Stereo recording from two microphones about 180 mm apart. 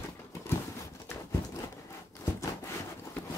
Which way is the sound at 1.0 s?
15° left (ahead or behind).